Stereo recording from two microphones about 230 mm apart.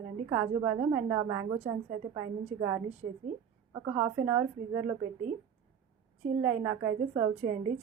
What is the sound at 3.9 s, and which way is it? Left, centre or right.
Speech, centre.